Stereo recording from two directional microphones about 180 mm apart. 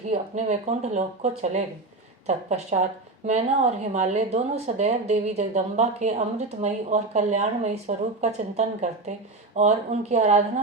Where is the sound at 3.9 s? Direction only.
40° right (ahead or behind).